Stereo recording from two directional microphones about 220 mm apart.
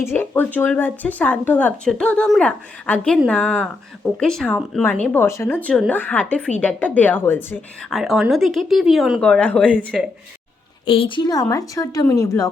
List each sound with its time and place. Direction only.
0.0 s a woman's voice: 10° left (ahead or behind)
10.8 s speech: 25° left (ahead or behind)